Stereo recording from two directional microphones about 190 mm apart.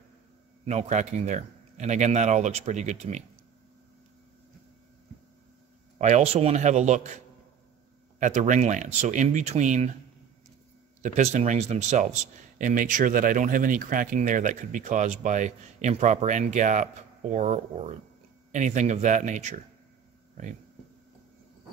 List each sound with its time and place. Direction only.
0.7 s speech: 35° right (ahead or behind)
5.9 s speech: 40° right (ahead or behind)
11.0 s speech: 40° right (ahead or behind)